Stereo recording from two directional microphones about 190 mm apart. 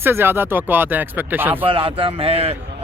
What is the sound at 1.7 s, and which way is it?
Speech, 30° right (ahead or behind).